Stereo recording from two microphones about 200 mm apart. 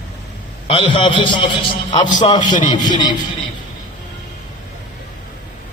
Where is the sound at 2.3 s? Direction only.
40° left (ahead or behind).